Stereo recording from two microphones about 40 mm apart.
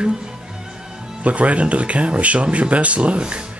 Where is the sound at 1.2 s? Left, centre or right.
Right.